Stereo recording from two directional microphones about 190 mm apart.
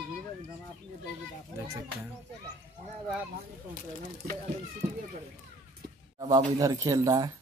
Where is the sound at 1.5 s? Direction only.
15° right (ahead or behind).